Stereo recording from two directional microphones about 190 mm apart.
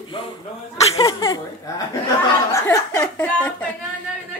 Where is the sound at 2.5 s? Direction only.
15° left (ahead or behind).